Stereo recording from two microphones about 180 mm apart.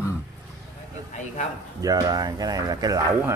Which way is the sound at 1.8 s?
20° right (ahead or behind).